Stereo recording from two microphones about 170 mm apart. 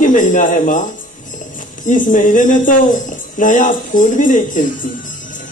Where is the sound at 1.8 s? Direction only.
50° left (ahead or behind).